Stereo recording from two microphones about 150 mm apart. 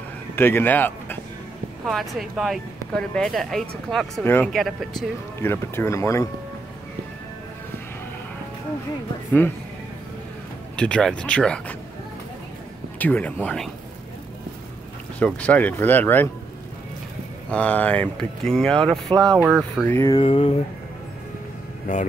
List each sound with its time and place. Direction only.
0.4 s speech: 15° left (ahead or behind)
1.9 s speech: centre (ahead or behind)
4.2 s speech: 15° left (ahead or behind)
4.5 s speech: centre (ahead or behind)
5.4 s speech: 15° left (ahead or behind)
10.8 s speech: 5° left (ahead or behind)
13.0 s speech: 10° left (ahead or behind)
15.1 s speech: 10° left (ahead or behind)
17.5 s speech: 10° left (ahead or behind)
19.8 s speech: 15° left (ahead or behind)
20.2 s speech: 40° left (ahead or behind)
21.9 s speech: 60° left (ahead or behind)